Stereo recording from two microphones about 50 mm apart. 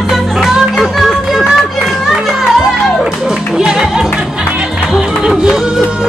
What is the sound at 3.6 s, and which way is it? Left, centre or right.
Music, centre.